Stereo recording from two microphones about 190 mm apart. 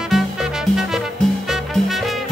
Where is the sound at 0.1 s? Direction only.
Centre (ahead or behind).